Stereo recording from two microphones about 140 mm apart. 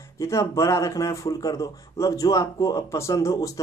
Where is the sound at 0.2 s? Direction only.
20° left (ahead or behind).